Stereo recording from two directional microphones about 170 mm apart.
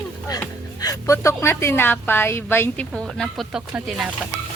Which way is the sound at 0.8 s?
20° left (ahead or behind).